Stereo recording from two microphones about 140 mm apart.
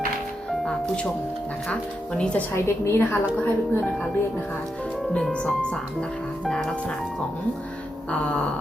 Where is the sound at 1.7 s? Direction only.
5° left (ahead or behind).